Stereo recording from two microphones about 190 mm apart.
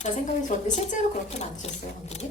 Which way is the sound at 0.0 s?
40° left (ahead or behind).